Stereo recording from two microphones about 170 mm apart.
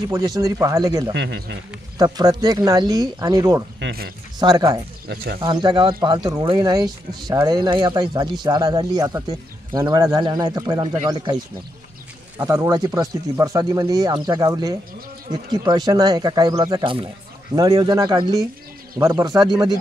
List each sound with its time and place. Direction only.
0.1 s speech: 20° right (ahead or behind)
1.1 s speech: 90° right
2.0 s speech: 25° right (ahead or behind)
3.8 s speech: 60° right (ahead or behind)
4.4 s speech: 25° right (ahead or behind)
5.0 s speech: 65° right (ahead or behind)
5.4 s speech: 25° right (ahead or behind)
12.4 s speech: 20° right (ahead or behind)